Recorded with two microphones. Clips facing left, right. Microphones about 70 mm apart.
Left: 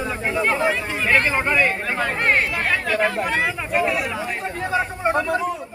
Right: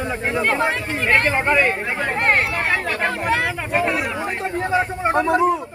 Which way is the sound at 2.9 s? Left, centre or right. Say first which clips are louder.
Even; right.